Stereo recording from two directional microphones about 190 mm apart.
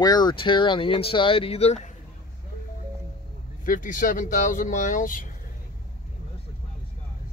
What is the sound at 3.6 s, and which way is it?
Speech, 45° left (ahead or behind).